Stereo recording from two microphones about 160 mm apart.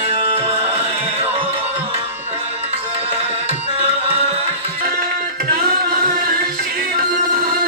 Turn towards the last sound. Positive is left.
turn(degrees=-65)  # may be behind; listen again after turning